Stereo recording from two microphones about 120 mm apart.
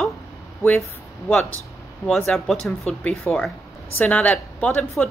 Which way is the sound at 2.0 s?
5° left (ahead or behind).